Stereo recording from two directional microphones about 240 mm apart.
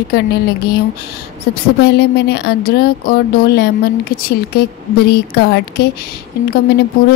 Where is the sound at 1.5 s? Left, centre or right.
Left.